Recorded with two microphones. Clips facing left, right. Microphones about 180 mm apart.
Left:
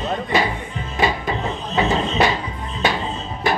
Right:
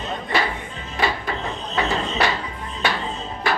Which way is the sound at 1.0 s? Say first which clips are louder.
Left 3 dB; 20° left (ahead or behind).